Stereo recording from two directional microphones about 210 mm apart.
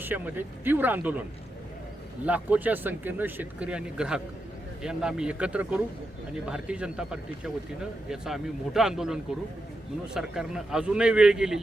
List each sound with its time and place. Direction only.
0.0 s speech: 10° right (ahead or behind)
2.2 s speech: 5° right (ahead or behind)
10.2 s speech: centre (ahead or behind)